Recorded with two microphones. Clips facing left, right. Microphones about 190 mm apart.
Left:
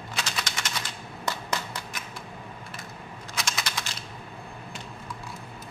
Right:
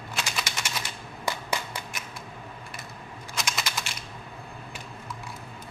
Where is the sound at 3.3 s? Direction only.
Centre (ahead or behind).